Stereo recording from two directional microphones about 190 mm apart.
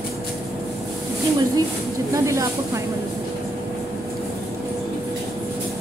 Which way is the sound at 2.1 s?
15° right (ahead or behind).